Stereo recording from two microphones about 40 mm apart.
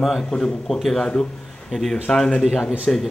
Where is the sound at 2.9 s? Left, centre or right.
Left.